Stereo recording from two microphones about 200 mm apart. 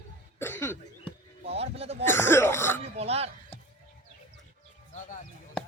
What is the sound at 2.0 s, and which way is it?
Throat clearing, 10° left (ahead or behind).